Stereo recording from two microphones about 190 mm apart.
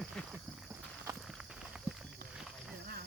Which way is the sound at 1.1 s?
Centre (ahead or behind).